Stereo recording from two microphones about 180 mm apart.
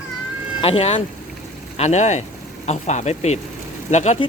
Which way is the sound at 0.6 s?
35° left (ahead or behind).